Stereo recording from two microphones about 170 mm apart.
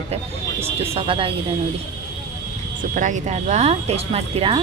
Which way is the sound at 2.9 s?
50° right (ahead or behind).